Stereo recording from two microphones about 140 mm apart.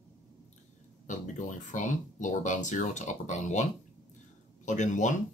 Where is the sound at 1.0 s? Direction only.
60° left (ahead or behind).